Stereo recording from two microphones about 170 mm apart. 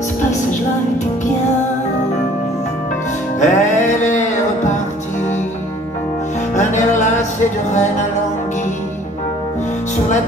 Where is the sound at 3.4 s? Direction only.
45° left (ahead or behind).